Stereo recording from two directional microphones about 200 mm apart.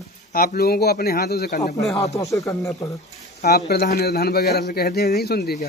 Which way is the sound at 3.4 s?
50° left (ahead or behind).